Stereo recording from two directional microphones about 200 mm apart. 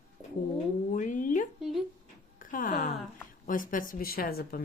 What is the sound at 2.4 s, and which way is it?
Speech, 40° left (ahead or behind).